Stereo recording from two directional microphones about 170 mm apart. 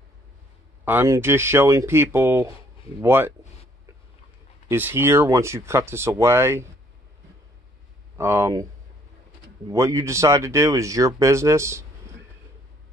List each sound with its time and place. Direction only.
0.8 s speech: 15° right (ahead or behind)
4.6 s speech: 10° right (ahead or behind)
8.2 s speech: 15° right (ahead or behind)
9.7 s speech: 20° right (ahead or behind)